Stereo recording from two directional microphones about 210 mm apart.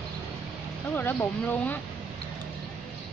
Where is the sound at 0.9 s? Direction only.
10° left (ahead or behind).